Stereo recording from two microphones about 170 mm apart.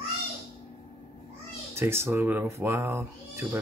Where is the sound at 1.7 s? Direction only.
15° right (ahead or behind).